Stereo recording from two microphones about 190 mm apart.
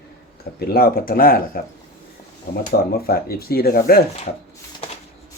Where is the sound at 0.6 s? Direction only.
50° left (ahead or behind).